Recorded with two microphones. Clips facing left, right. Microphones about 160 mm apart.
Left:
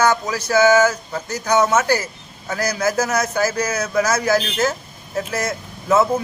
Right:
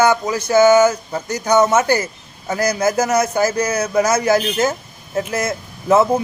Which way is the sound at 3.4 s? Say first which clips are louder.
Right 3 dB; 15° right (ahead or behind).